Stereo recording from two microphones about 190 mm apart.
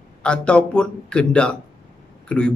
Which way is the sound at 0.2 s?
5° left (ahead or behind).